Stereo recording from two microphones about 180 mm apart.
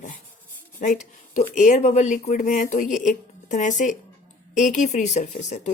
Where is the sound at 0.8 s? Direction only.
40° left (ahead or behind).